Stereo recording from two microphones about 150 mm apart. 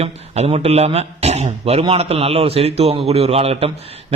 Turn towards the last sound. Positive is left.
turn(degrees=-40)  # may be behind; listen again after turning